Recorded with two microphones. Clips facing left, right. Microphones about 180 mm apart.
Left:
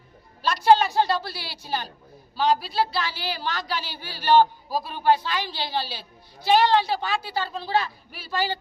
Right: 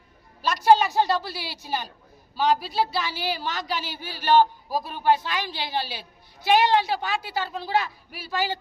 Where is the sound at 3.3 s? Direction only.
15° right (ahead or behind).